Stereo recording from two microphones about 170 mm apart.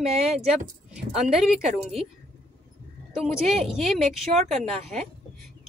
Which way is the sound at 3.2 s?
Centre (ahead or behind).